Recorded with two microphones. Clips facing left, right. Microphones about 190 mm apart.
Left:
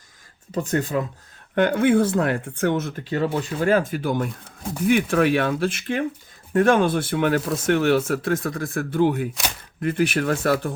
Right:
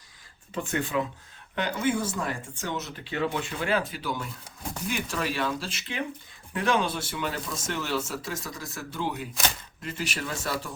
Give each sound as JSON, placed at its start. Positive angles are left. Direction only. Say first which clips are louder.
{"t": 0.5, "sound": "speech", "louder": "left 5 dB", "side_deg": 40}
{"t": 1.5, "sound": "speech", "louder": "left 10 dB", "side_deg": 60}